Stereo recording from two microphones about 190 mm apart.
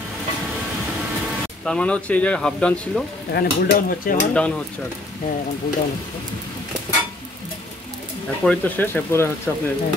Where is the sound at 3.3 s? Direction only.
50° left (ahead or behind).